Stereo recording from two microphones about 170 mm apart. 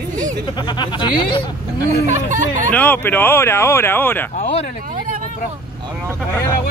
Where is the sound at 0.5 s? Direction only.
25° left (ahead or behind).